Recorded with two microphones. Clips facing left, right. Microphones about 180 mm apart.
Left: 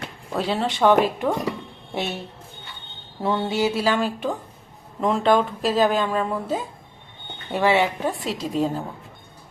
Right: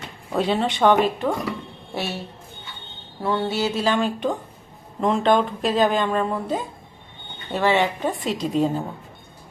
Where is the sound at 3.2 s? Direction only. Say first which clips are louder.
Left 1 dB; 15° left (ahead or behind); by 8.8 s centre (ahead or behind).